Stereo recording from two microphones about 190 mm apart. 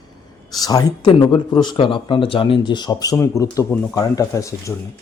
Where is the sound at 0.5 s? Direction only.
20° left (ahead or behind).